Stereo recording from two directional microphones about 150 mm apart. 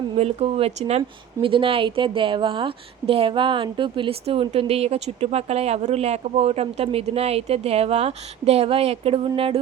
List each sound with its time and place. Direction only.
0.2 s speech: 45° right (ahead or behind)